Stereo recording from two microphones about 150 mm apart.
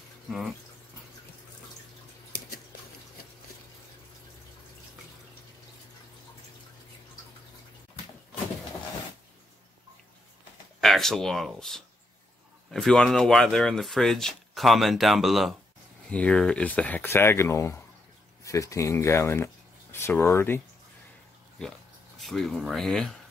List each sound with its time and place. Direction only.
0.3 s speech: centre (ahead or behind)
10.8 s speech: 5° left (ahead or behind)
22.2 s speech: centre (ahead or behind)